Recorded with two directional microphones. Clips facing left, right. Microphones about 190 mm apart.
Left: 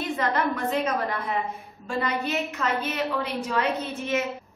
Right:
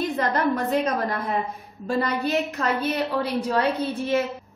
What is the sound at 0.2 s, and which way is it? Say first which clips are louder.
A woman's voice: right 2 dB; 40° right (ahead or behind).